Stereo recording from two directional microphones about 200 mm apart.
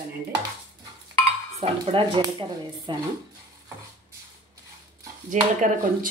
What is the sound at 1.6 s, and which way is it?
Speech, 25° right (ahead or behind).